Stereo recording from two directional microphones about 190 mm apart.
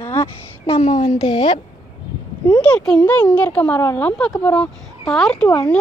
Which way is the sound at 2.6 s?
5° left (ahead or behind).